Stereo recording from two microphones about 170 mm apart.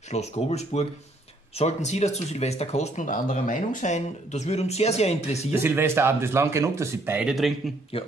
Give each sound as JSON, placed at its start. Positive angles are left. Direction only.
{"t": 0.1, "sound": "speech", "side_deg": 40}
{"t": 5.5, "sound": "speech", "side_deg": -10}
{"t": 7.9, "sound": "speech", "side_deg": 35}